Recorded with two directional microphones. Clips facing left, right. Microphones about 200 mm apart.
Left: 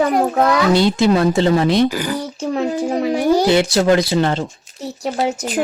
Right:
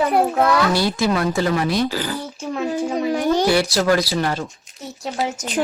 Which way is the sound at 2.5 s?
30° left (ahead or behind).